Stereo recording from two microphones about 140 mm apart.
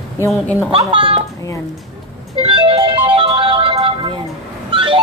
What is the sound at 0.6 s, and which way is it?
Speech, 40° right (ahead or behind).